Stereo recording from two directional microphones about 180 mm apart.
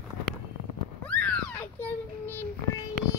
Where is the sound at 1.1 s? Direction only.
5° left (ahead or behind).